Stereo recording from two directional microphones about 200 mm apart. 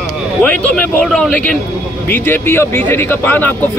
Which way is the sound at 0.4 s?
5° left (ahead or behind).